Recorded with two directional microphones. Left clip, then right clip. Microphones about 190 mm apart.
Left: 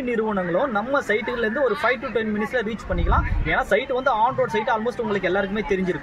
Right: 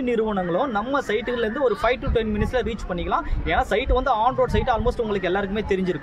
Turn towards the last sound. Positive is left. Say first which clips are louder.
# even
turn(degrees=-30)  # may be behind; listen again after turning